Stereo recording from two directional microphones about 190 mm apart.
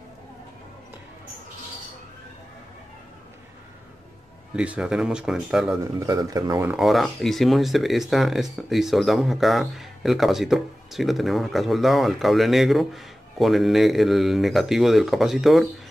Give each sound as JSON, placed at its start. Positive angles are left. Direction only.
{"t": 4.6, "sound": "speech", "side_deg": -5}
{"t": 5.9, "sound": "speech", "side_deg": -20}
{"t": 6.8, "sound": "speech", "side_deg": 0}